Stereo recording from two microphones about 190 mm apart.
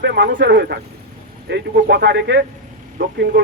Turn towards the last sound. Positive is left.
turn(degrees=-55)  # may be behind; listen again after turning